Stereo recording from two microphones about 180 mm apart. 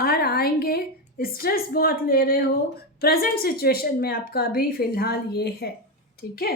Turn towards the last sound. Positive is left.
turn(degrees=60)  # may be behind; listen again after turning